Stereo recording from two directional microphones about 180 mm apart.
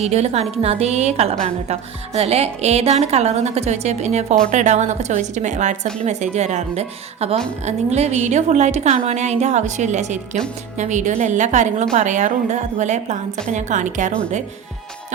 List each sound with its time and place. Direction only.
0.0 s a woman's voice: 35° right (ahead or behind)